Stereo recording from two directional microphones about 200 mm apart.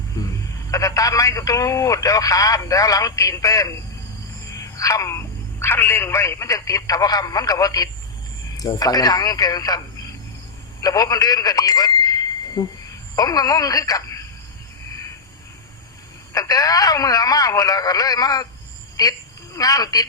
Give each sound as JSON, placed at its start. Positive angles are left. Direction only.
{"t": 0.2, "sound": "speech", "side_deg": 15}
{"t": 16.3, "sound": "speech", "side_deg": 15}